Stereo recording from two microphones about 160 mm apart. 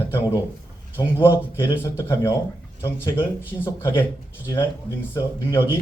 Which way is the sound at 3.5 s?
15° left (ahead or behind).